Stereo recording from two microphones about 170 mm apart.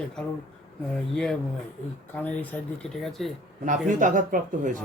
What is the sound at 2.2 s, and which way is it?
Speech, 10° left (ahead or behind).